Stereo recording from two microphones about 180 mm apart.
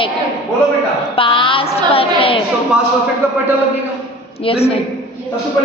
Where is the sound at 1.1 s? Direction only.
30° left (ahead or behind).